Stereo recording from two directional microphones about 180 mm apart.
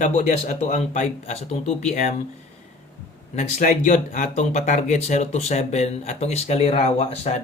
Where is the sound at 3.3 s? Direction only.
45° left (ahead or behind).